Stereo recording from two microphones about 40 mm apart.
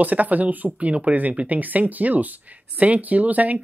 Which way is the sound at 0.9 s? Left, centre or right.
Right.